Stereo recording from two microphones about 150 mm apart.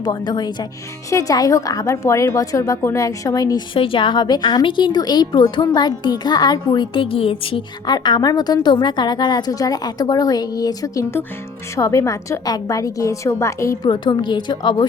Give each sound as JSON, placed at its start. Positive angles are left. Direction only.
{"t": 0.0, "sound": "a woman's voice", "side_deg": 30}
{"t": 3.8, "sound": "a woman's voice", "side_deg": 35}
{"t": 13.8, "sound": "a woman's voice", "side_deg": 30}